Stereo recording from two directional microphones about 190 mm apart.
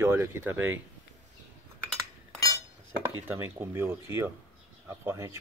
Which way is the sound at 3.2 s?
10° right (ahead or behind).